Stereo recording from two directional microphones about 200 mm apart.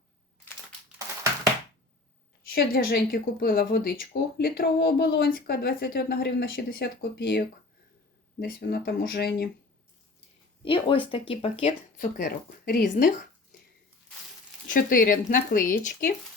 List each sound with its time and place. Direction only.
2.4 s speech: 50° left (ahead or behind)
10.6 s speech: 25° left (ahead or behind)
11.6 s speech: 40° left (ahead or behind)
14.7 s speech: 45° left (ahead or behind)